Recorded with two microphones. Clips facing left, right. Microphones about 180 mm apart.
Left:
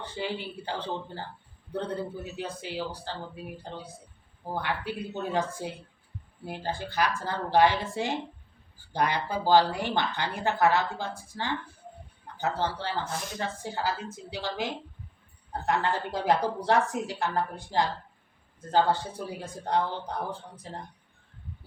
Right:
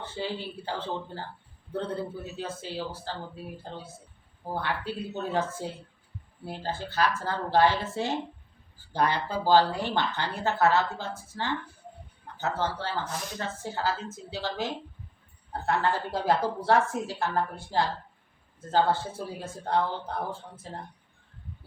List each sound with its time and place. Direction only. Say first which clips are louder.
0.0 s speech: even; 15° left (ahead or behind)